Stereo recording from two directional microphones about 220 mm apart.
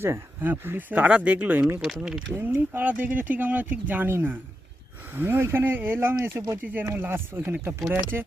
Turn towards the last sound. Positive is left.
turn(degrees=-10)  # may be behind; listen again after turning